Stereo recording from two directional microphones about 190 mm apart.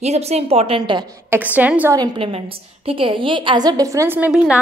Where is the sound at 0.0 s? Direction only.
35° right (ahead or behind).